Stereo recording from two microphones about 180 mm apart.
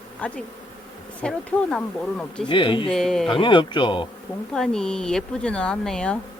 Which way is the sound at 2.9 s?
5° left (ahead or behind).